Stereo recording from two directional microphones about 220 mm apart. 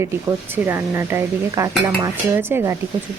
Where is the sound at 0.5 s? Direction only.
10° right (ahead or behind).